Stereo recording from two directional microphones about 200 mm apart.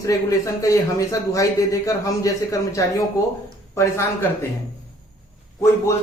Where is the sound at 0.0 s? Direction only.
15° left (ahead or behind).